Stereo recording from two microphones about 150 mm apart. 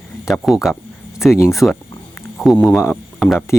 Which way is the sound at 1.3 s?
20° left (ahead or behind).